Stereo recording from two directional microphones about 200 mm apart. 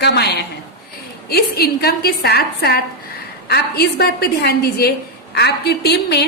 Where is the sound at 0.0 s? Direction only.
55° left (ahead or behind).